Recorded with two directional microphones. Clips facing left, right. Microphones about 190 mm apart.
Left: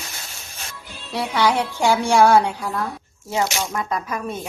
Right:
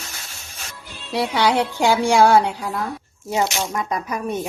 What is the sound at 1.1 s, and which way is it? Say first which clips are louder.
A woman's voice: right 1 dB; 15° right (ahead or behind).